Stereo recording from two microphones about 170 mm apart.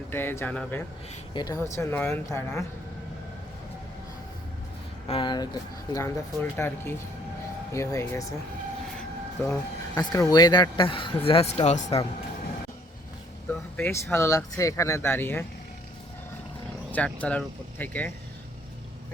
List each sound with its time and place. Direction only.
0.1 s speech: 15° left (ahead or behind)
1.3 s speech: 25° left (ahead or behind)
5.0 s speech: 30° left (ahead or behind)
9.4 s speech: 20° left (ahead or behind); by 11.9 s 40° left (ahead or behind)
13.7 s speech: 15° left (ahead or behind)
16.9 s speech: 10° left (ahead or behind)